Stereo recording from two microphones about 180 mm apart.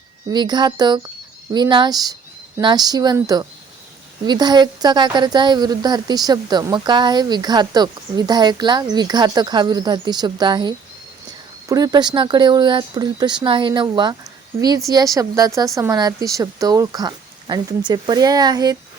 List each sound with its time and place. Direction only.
0.3 s speech: 25° right (ahead or behind)